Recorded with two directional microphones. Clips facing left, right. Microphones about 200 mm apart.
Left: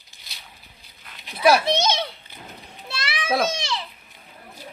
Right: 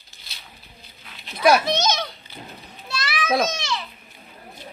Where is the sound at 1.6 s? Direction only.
30° left (ahead or behind).